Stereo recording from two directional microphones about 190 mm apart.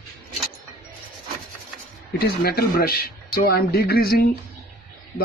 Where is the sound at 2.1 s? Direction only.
55° left (ahead or behind).